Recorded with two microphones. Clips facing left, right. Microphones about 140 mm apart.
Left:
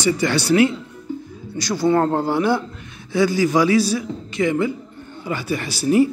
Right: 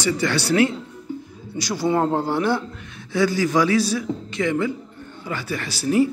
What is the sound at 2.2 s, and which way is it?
A man's voice, 5° left (ahead or behind).